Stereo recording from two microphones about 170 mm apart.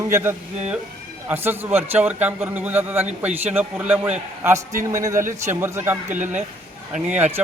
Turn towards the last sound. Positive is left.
turn(degrees=-10)  # may be behind; listen again after turning